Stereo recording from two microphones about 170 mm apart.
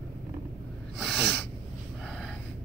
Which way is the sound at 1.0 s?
5° left (ahead or behind).